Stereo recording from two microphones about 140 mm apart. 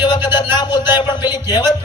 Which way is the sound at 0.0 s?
30° left (ahead or behind).